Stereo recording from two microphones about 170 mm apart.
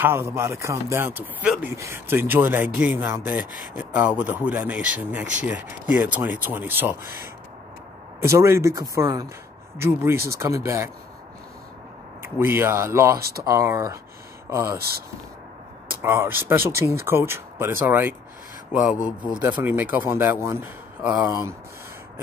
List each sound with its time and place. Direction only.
0.0 s speech: 15° right (ahead or behind)
6.4 s speech: 10° right (ahead or behind)
8.2 s speech: 15° right (ahead or behind)
12.2 s speech: 15° right (ahead or behind)
14.8 s speech: 65° right (ahead or behind)
16.0 s speech: 15° right (ahead or behind)